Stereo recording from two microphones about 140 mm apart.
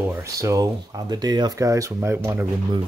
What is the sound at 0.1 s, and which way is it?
Speech, 20° right (ahead or behind).